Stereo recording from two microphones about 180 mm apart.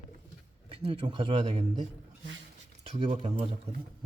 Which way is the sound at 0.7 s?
35° right (ahead or behind).